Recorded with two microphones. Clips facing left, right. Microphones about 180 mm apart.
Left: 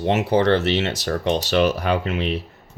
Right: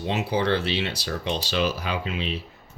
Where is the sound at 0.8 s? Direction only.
50° left (ahead or behind).